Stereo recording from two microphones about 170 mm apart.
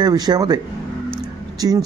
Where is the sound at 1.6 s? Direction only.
20° right (ahead or behind).